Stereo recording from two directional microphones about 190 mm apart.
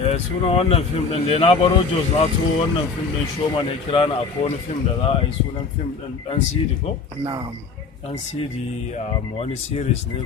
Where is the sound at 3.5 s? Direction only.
25° left (ahead or behind).